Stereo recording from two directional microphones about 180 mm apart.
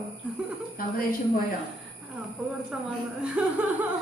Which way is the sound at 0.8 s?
55° left (ahead or behind).